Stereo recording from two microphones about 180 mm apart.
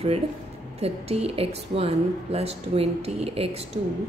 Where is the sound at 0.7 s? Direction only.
35° right (ahead or behind).